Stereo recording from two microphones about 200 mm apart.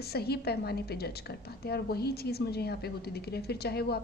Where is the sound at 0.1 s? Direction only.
50° left (ahead or behind).